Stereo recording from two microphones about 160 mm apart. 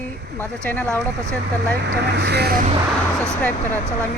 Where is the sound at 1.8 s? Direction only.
90° right.